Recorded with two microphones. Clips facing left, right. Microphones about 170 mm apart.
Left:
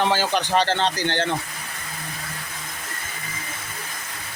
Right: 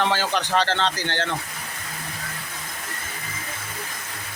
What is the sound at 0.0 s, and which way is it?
Speech, 10° left (ahead or behind).